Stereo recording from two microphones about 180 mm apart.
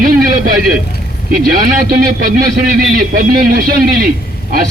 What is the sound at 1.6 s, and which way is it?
Speech, 55° right (ahead or behind).